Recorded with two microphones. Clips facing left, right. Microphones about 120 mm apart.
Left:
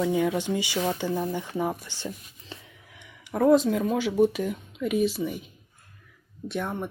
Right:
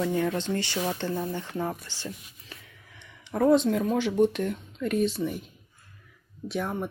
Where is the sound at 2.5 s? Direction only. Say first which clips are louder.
Left 5 dB; 25° left (ahead or behind).